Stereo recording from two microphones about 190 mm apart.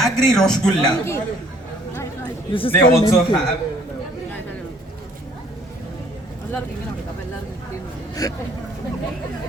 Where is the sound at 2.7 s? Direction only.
15° left (ahead or behind).